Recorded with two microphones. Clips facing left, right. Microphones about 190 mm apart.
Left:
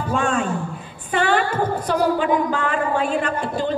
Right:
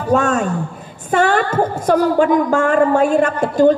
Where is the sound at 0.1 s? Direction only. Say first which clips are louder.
Right 6 dB; 40° right (ahead or behind).